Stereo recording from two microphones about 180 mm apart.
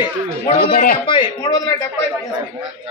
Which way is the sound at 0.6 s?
55° left (ahead or behind).